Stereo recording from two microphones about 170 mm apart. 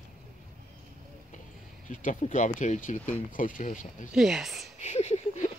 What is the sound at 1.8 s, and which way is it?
Speech, 50° left (ahead or behind).